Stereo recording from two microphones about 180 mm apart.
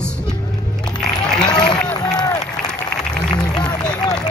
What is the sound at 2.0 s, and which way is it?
Run, 20° left (ahead or behind).